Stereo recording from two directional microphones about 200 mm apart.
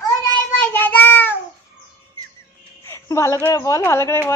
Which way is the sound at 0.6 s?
10° left (ahead or behind).